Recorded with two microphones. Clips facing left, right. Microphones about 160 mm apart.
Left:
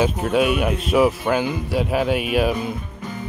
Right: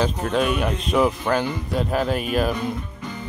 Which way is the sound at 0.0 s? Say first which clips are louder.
Left 3 dB; 5° left (ahead or behind).